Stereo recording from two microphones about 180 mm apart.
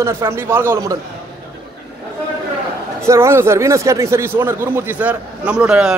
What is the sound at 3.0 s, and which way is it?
A man's voice, 15° right (ahead or behind).